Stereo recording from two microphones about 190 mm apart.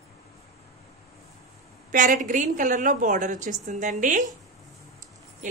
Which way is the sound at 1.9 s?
45° right (ahead or behind).